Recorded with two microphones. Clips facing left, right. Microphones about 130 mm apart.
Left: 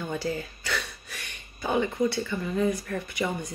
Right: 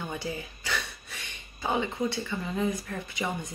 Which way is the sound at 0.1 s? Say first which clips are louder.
Left 5 dB; 15° right (ahead or behind).